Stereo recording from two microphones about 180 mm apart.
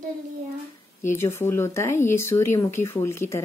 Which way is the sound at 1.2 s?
15° left (ahead or behind).